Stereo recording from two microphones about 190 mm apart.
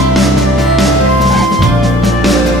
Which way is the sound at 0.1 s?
Centre (ahead or behind).